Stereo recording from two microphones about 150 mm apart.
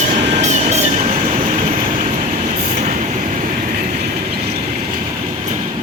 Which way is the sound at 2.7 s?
50° right (ahead or behind).